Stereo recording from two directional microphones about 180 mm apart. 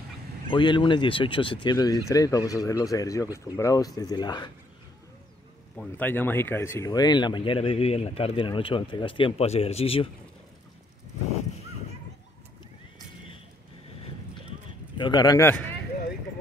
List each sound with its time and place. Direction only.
0.5 s speech: 25° left (ahead or behind)
5.8 s speech: 10° left (ahead or behind); by 10.0 s 35° left (ahead or behind)
15.0 s speech: 25° left (ahead or behind)